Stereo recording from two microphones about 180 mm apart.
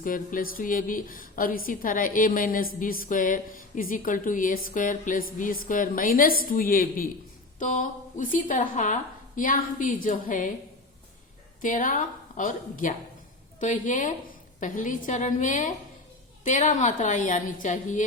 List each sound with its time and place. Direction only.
0.0 s a woman's voice: 50° left (ahead or behind)
11.6 s a woman's voice: 45° left (ahead or behind)